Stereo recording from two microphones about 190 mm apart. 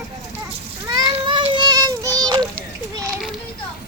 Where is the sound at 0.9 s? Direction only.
20° right (ahead or behind).